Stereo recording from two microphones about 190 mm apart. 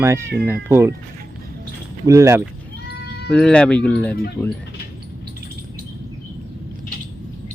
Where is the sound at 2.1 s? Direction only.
15° right (ahead or behind).